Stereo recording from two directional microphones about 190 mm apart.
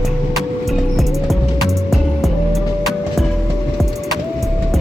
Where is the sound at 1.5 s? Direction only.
Centre (ahead or behind).